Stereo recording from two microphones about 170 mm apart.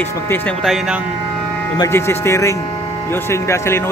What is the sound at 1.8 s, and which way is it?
Speech, 15° left (ahead or behind).